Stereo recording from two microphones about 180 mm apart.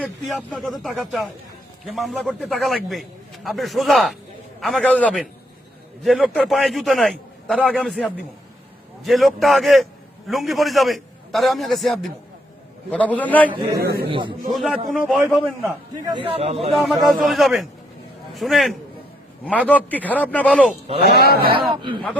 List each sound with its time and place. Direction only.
0.0 s a man's voice: 5° left (ahead or behind)
13.7 s speech: 60° right (ahead or behind)
14.1 s speech: 25° right (ahead or behind)
14.5 s a man's voice: centre (ahead or behind)
16.0 s speech: 25° right (ahead or behind)
16.7 s a man's voice: centre (ahead or behind)
21.0 s speech: 60° left (ahead or behind)
21.7 s speech: 25° right (ahead or behind)